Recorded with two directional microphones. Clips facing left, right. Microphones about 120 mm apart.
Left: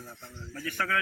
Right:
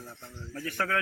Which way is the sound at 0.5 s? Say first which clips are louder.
Right 1 dB; 30° right (ahead or behind).